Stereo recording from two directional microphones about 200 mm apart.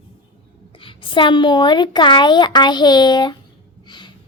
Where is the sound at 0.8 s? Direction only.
25° left (ahead or behind).